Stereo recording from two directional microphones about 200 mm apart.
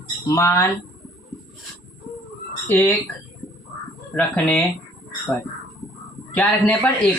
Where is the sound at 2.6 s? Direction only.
5° left (ahead or behind).